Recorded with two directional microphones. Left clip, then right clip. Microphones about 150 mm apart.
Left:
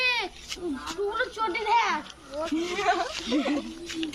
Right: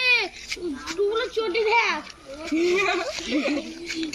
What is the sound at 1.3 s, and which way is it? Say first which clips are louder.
Speech: right 1 dB; 30° left (ahead or behind).